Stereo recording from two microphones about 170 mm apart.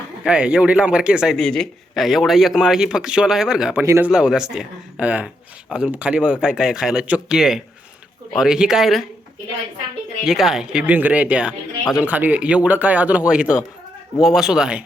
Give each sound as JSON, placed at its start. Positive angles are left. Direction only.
{"t": 0.3, "sound": "a man's voice", "side_deg": -5}
{"t": 3.8, "sound": "speech", "side_deg": -15}
{"t": 4.1, "sound": "a man's voice", "side_deg": -5}
{"t": 10.2, "sound": "a man's voice", "side_deg": 0}